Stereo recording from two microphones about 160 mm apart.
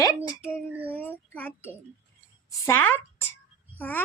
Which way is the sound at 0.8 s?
10° left (ahead or behind).